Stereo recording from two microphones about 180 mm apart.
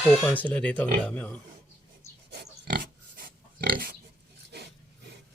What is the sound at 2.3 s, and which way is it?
Pig, 65° right (ahead or behind).